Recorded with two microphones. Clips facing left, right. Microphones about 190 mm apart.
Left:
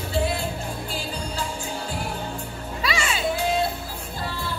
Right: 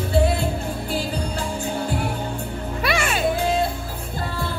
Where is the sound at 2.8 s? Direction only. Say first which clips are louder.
Right 4 dB; 55° right (ahead or behind).